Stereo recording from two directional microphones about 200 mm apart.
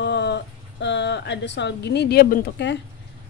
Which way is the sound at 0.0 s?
60° left (ahead or behind).